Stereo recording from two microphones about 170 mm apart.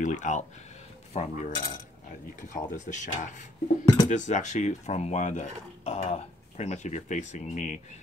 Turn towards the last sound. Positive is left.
turn(degrees=45)  # may be behind; listen again after turning